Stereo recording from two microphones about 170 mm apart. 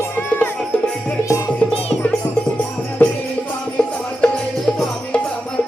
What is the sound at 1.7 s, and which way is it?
Music, 35° left (ahead or behind).